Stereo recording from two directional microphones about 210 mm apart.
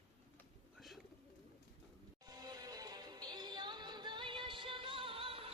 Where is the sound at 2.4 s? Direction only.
20° right (ahead or behind).